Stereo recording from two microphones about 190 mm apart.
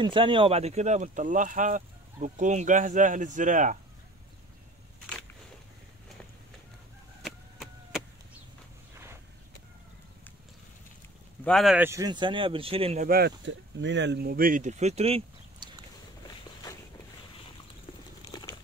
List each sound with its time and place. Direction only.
0.0 s speech: 25° right (ahead or behind); by 3.7 s 40° right (ahead or behind)
7.2 s vehicle: centre (ahead or behind)
11.4 s speech: centre (ahead or behind); by 13.1 s 35° right (ahead or behind)
13.1 s speech: 65° right (ahead or behind); by 15.7 s 30° right (ahead or behind)
18.2 s a sound: 20° left (ahead or behind)